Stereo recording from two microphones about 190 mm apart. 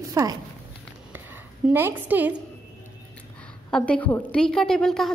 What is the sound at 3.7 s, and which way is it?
A woman's voice, 5° left (ahead or behind).